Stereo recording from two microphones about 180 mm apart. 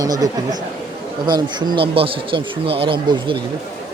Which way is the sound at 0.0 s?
20° right (ahead or behind).